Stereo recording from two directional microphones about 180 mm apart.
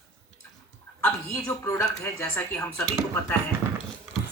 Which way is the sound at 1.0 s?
15° left (ahead or behind).